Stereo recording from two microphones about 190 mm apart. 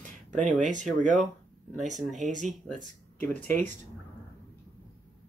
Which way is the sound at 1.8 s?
40° right (ahead or behind).